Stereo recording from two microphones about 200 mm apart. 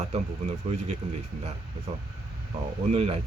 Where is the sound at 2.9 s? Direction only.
30° right (ahead or behind).